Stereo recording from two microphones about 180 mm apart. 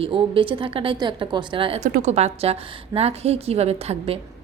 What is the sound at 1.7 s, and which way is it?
A woman's voice, 45° right (ahead or behind).